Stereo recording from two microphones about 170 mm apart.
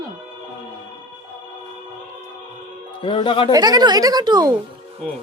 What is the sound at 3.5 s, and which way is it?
Speech, 20° right (ahead or behind).